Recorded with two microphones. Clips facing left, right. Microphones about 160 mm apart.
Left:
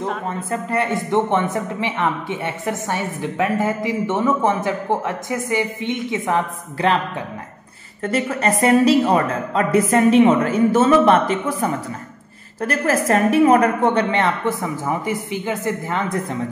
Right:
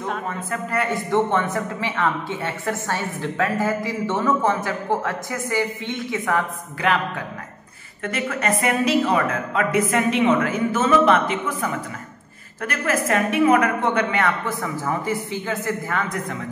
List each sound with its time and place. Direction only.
0.3 s a man's voice: 25° left (ahead or behind)
8.0 s a woman's voice: 35° left (ahead or behind)